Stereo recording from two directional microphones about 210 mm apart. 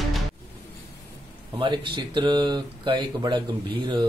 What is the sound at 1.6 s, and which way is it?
Speech, 20° right (ahead or behind).